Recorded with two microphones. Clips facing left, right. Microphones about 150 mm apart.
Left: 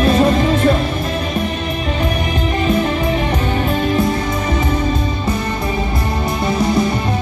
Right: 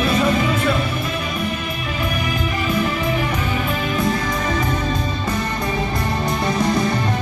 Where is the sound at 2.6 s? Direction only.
35° left (ahead or behind).